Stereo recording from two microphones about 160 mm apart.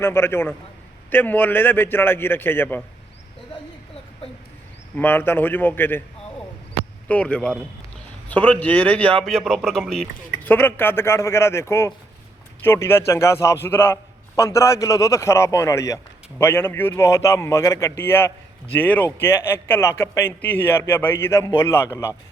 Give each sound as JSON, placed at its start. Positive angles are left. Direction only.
{"t": 0.0, "sound": "a man's voice", "side_deg": 15}
{"t": 4.9, "sound": "a man's voice", "side_deg": 15}
{"t": 7.1, "sound": "a man's voice", "side_deg": 5}